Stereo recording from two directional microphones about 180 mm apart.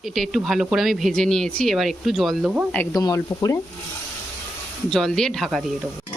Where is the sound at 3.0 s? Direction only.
20° left (ahead or behind).